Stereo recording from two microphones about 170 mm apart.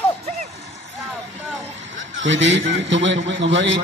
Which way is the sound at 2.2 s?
90° right.